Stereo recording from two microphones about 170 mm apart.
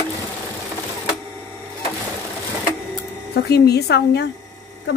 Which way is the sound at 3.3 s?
70° left (ahead or behind).